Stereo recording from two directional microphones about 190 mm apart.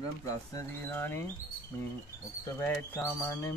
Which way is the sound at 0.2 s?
20° left (ahead or behind).